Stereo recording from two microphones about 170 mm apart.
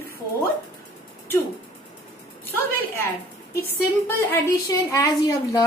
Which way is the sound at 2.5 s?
15° left (ahead or behind).